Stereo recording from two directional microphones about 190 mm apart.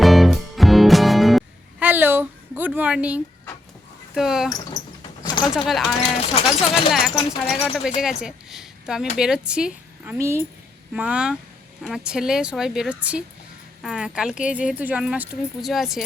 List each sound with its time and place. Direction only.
0.0 s music: centre (ahead or behind)
4.1 s speech: centre (ahead or behind)
4.8 s cricket: 40° left (ahead or behind)
5.2 s a sound: 25° left (ahead or behind)
5.5 s speech: centre (ahead or behind)
6.0 s speech: 30° left (ahead or behind)
7.6 s speech: 5° right (ahead or behind)